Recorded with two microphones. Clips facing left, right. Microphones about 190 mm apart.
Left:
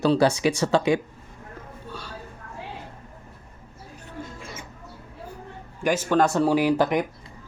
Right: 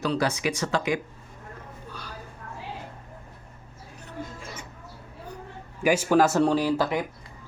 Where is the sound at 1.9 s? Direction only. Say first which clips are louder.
Left 4 dB; 30° left (ahead or behind).